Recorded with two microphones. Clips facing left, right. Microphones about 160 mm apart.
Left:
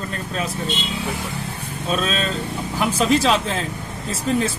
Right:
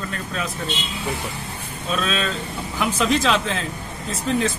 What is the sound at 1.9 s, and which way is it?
Speech, 40° left (ahead or behind).